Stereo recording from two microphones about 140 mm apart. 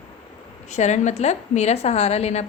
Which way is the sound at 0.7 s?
55° left (ahead or behind).